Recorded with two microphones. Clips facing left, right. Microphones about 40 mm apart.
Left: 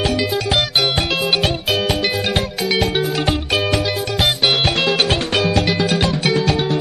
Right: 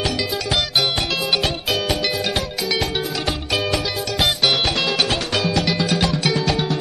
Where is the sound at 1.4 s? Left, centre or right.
Centre.